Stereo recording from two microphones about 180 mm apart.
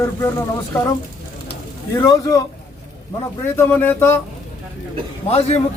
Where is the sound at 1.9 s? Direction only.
15° left (ahead or behind).